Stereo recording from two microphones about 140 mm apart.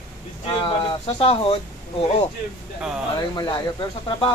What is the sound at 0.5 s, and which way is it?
Speech, 40° left (ahead or behind).